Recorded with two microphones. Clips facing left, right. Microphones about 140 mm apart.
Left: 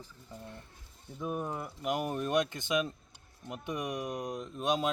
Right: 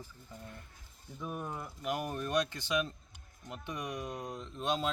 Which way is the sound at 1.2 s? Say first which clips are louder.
Left 5 dB; 15° left (ahead or behind).